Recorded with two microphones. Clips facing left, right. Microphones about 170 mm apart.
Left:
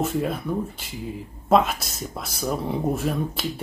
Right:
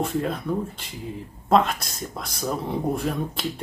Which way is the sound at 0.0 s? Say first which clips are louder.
Left 1 dB; 5° left (ahead or behind).